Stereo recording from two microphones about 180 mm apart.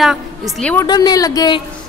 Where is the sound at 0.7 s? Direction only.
25° left (ahead or behind).